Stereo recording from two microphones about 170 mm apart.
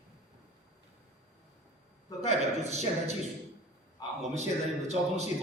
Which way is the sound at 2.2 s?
40° right (ahead or behind).